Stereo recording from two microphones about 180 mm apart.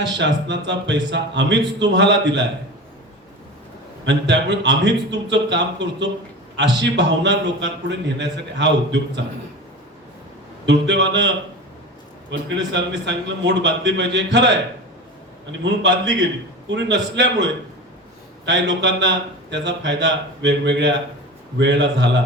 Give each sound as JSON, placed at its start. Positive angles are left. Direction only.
{"t": 0.0, "sound": "a man's voice", "side_deg": -75}
{"t": 4.0, "sound": "a man's voice", "side_deg": -75}
{"t": 10.7, "sound": "a man's voice", "side_deg": -80}
{"t": 12.3, "sound": "a man's voice", "side_deg": -75}
{"t": 15.6, "sound": "a man's voice", "side_deg": -80}